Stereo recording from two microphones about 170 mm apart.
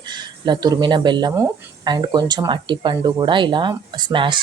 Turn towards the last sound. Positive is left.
turn(degrees=-30)  # may be behind; listen again after turning